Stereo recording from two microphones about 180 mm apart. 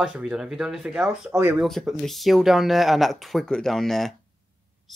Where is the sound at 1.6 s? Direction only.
Centre (ahead or behind).